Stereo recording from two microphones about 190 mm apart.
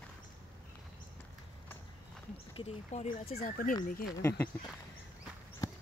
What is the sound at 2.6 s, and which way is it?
Speech, 30° left (ahead or behind).